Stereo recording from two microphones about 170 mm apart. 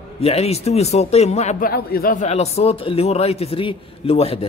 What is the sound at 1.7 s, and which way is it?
Speech, 60° left (ahead or behind).